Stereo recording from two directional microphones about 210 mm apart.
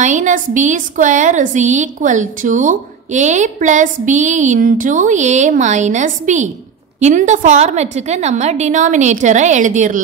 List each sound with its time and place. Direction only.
0.0 s a woman's voice: 35° right (ahead or behind)